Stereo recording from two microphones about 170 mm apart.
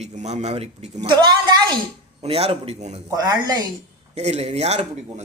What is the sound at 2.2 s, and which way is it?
Speech, 35° right (ahead or behind).